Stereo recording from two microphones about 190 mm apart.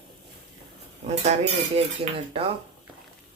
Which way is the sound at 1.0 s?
35° right (ahead or behind).